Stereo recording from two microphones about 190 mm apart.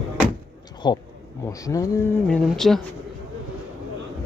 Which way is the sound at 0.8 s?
25° left (ahead or behind).